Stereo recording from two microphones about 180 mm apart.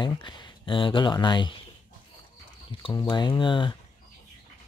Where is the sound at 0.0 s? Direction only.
25° left (ahead or behind).